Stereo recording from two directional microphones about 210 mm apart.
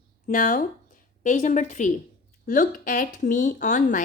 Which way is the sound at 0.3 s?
40° left (ahead or behind).